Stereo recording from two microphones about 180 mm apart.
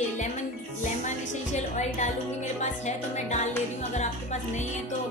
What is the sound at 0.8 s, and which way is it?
A woman's voice, 45° left (ahead or behind).